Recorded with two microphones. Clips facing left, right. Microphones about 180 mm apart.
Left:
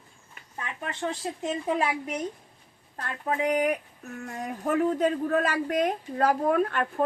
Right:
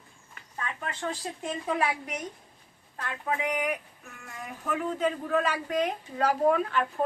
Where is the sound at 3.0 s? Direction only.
40° left (ahead or behind).